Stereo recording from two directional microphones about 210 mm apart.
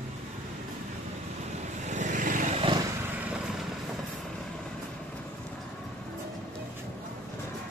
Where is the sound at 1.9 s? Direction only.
35° right (ahead or behind).